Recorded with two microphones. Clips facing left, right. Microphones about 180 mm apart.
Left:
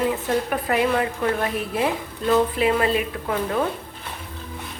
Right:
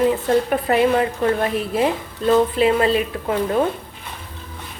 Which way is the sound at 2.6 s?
30° right (ahead or behind).